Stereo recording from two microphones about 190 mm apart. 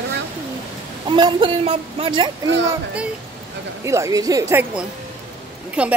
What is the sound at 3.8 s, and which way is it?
A woman's voice, 15° right (ahead or behind).